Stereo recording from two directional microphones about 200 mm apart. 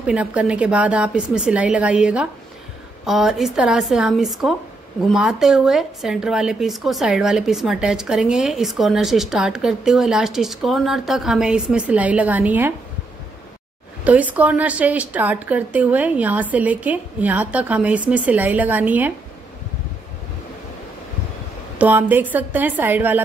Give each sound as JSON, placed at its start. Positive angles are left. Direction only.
{"t": 0.0, "sound": "a woman's voice", "side_deg": -5}
{"t": 14.0, "sound": "a woman's voice", "side_deg": -5}
{"t": 21.7, "sound": "a woman's voice", "side_deg": -10}